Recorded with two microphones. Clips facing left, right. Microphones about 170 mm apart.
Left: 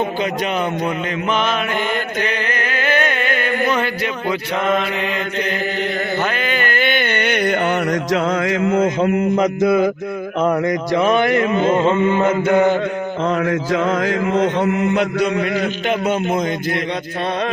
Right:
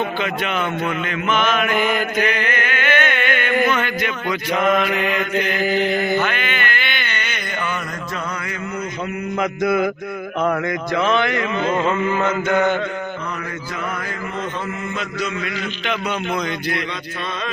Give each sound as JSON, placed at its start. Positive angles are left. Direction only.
{"t": 1.3, "sound": "mantra", "side_deg": 30}
{"t": 1.7, "sound": "chant", "side_deg": -10}
{"t": 2.2, "sound": "a sound", "side_deg": 35}
{"t": 4.7, "sound": "chant", "side_deg": 30}
{"t": 6.2, "sound": "a sound", "side_deg": 35}
{"t": 9.3, "sound": "chant", "side_deg": 25}
{"t": 11.1, "sound": "a man's voice", "side_deg": 45}
{"t": 11.6, "sound": "chant", "side_deg": 30}
{"t": 13.2, "sound": "mantra", "side_deg": 90}